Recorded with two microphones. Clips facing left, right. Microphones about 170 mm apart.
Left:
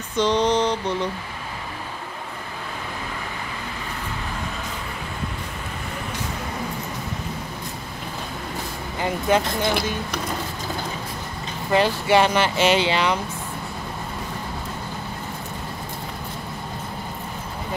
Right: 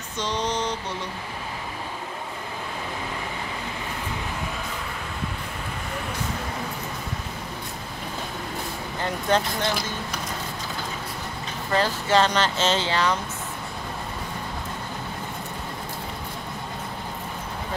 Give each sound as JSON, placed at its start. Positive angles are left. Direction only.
{"t": 0.2, "sound": "a sound", "side_deg": 60}
{"t": 9.0, "sound": "speech", "side_deg": 10}
{"t": 11.7, "sound": "speech", "side_deg": 15}